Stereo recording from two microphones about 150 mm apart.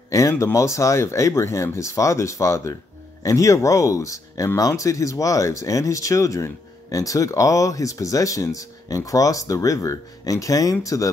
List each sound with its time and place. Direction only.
0.1 s speech: 20° left (ahead or behind)